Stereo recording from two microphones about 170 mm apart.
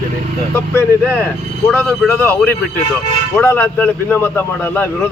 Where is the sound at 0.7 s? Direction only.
10° left (ahead or behind).